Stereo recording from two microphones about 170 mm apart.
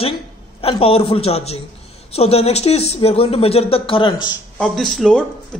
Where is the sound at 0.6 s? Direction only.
35° left (ahead or behind).